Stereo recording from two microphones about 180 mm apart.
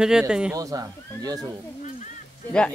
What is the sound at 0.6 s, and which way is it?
Speech, 20° right (ahead or behind).